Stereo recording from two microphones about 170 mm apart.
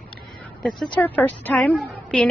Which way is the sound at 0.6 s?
5° left (ahead or behind).